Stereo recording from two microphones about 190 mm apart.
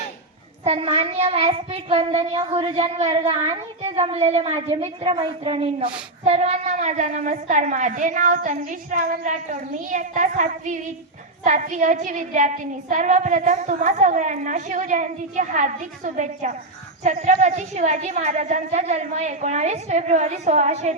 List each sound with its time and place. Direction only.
0.6 s a woman's voice: 30° right (ahead or behind)